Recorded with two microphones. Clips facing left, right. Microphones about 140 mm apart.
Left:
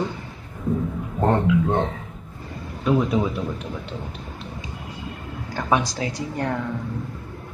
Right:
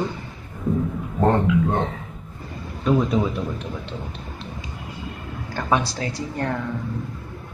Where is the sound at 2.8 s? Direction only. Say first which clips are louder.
Even; 5° left (ahead or behind).